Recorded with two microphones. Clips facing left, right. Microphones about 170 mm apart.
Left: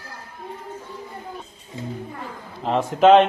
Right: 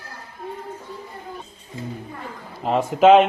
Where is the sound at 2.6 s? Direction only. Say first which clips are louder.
Right 1 dB; 5° right (ahead or behind).